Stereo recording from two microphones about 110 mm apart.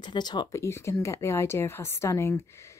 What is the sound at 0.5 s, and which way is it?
Speech, 25° left (ahead or behind).